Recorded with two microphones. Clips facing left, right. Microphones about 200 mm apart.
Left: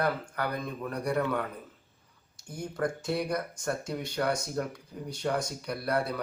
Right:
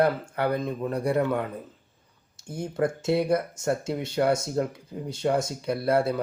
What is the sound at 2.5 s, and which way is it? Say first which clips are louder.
Speech: right 5 dB; 25° right (ahead or behind).